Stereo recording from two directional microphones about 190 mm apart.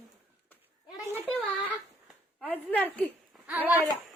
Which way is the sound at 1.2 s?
10° left (ahead or behind).